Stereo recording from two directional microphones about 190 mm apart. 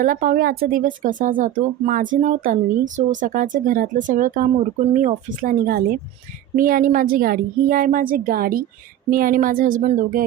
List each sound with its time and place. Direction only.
0.0 s speech: 45° right (ahead or behind)